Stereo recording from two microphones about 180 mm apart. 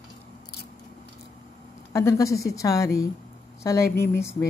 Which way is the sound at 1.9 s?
15° left (ahead or behind).